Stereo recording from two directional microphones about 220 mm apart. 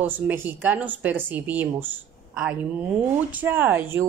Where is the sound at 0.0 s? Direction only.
10° right (ahead or behind).